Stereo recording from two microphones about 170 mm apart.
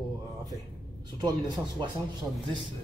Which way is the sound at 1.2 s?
25° right (ahead or behind).